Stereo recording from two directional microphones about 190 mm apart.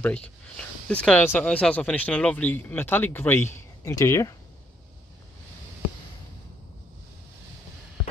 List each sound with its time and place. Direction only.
0.0 s speech: 5° left (ahead or behind)